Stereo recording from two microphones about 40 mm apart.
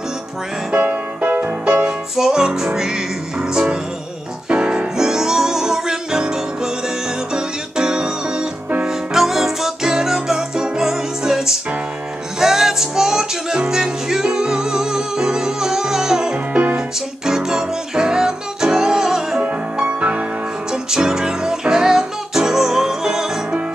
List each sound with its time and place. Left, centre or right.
0.7 s music: right
2.1 s music: centre
4.5 s music: right
5.0 s music: centre
20.0 s music: right
20.7 s music: centre